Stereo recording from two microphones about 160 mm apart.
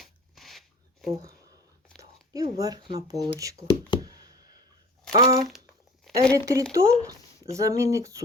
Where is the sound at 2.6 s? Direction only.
25° right (ahead or behind).